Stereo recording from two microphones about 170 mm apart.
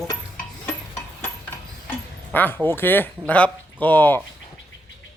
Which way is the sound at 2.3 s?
10° left (ahead or behind).